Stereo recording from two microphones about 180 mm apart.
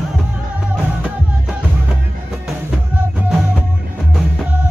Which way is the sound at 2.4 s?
5° right (ahead or behind).